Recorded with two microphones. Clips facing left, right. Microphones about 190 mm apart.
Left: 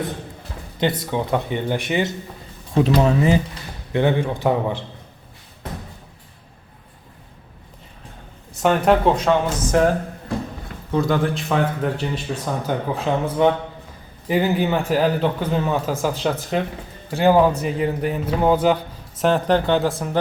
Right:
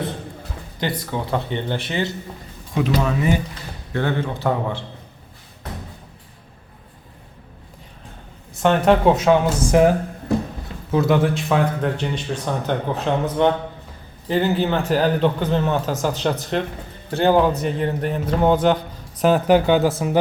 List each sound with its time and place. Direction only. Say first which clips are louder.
0.8 s speech: left 4 dB; 20° left (ahead or behind)
2.7 s speech: left 4 dB; 30° left (ahead or behind)
3.9 s speech: left 4 dB; 15° left (ahead or behind)
8.6 s speech: right 1 dB; centre (ahead or behind)
9.7 s speech: right 2 dB; 15° right (ahead or behind)
10.9 s speech: right 2 dB; 5° right (ahead or behind)
19.2 s speech: right 2 dB; 5° right (ahead or behind)